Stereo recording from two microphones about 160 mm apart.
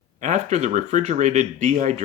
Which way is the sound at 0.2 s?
50° right (ahead or behind).